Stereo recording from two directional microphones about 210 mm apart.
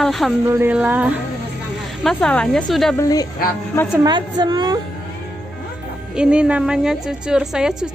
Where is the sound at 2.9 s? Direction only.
15° left (ahead or behind).